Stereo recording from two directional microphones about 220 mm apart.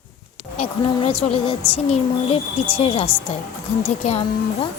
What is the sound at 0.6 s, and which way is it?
A woman's voice, 25° left (ahead or behind).